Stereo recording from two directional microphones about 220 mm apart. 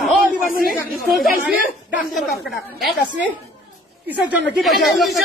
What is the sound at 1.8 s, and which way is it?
A woman's voice, centre (ahead or behind).